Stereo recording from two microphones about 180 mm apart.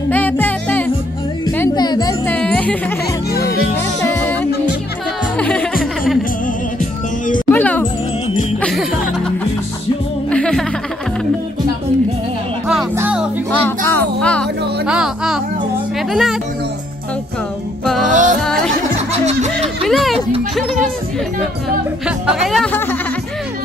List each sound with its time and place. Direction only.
0.1 s music: 10° left (ahead or behind)
1.4 s music: 20° left (ahead or behind)
2.3 s music: 5° left (ahead or behind)
5.4 s music: 5° left (ahead or behind)
6.4 s music: 50° left (ahead or behind)
7.5 s music: 10° left (ahead or behind)
10.3 s music: 5° left (ahead or behind)
12.9 s music: 10° right (ahead or behind)
13.5 s a sound: 10° left (ahead or behind)
14.9 s children playing: 5° right (ahead or behind)
16.1 s music: centre (ahead or behind)
18.1 s music: 45° right (ahead or behind)
19.8 s a sound: centre (ahead or behind)
22.0 s speech: 5° right (ahead or behind)